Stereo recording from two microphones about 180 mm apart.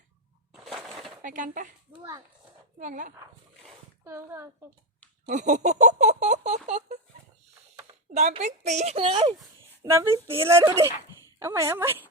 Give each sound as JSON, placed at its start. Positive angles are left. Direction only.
{"t": 0.5, "sound": "crushing", "side_deg": 0}
{"t": 1.2, "sound": "speech", "side_deg": -45}
{"t": 2.7, "sound": "speech", "side_deg": -45}
{"t": 4.0, "sound": "speech", "side_deg": -15}
{"t": 5.3, "sound": "a woman's voice", "side_deg": -40}
{"t": 6.7, "sound": "a sound", "side_deg": -40}
{"t": 8.1, "sound": "a woman's voice", "side_deg": -40}
{"t": 9.9, "sound": "speech", "side_deg": -15}